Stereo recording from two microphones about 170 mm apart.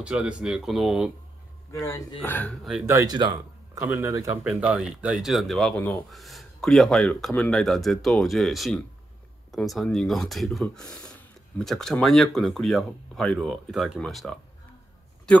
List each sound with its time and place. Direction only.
0.0 s speech: 5° right (ahead or behind)
1.7 s speech: 20° left (ahead or behind)
2.9 s speech: 20° right (ahead or behind); by 14.4 s centre (ahead or behind)